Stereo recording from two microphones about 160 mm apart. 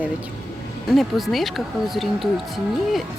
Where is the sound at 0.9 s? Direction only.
Centre (ahead or behind).